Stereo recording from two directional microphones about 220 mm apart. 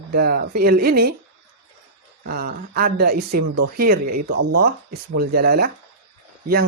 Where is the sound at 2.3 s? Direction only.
45° right (ahead or behind).